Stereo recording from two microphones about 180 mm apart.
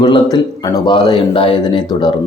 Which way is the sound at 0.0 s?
25° left (ahead or behind).